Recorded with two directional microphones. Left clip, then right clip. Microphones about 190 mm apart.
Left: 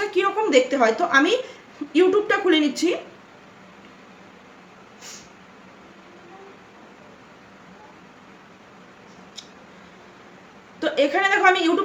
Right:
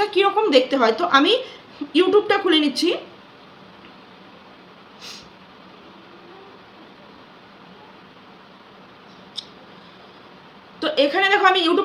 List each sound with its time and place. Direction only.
0.0 s a woman's voice: 20° right (ahead or behind)
10.8 s a woman's voice: 15° right (ahead or behind)